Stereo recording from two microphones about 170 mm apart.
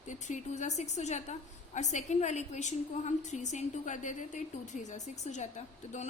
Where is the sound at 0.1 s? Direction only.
45° left (ahead or behind).